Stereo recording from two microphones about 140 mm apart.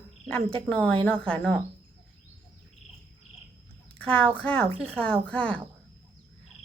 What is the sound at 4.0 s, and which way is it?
Speech, 10° left (ahead or behind).